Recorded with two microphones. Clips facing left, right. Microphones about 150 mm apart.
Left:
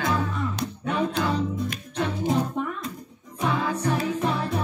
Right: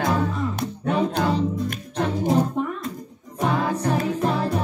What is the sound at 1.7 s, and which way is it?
Music, 40° right (ahead or behind).